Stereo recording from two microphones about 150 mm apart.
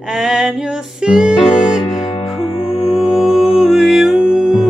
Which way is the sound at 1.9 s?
50° left (ahead or behind).